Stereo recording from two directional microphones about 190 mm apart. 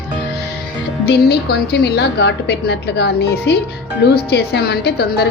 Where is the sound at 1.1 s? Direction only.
60° left (ahead or behind).